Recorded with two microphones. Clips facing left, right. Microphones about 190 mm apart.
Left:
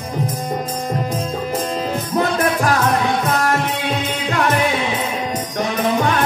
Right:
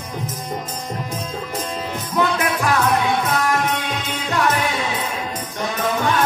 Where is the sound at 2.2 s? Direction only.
40° left (ahead or behind).